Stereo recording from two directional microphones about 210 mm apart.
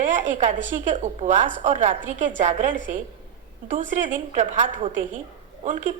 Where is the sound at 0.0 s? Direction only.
35° right (ahead or behind).